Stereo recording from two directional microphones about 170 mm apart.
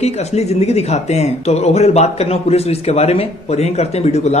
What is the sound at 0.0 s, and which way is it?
Speech, 40° left (ahead or behind).